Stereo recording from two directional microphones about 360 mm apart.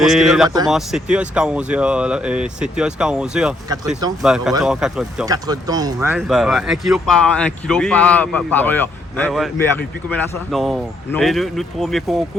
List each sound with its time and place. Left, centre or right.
0.0 s speech: centre